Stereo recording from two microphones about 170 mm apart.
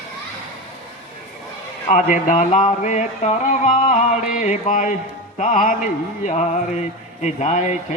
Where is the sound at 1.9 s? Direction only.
50° left (ahead or behind).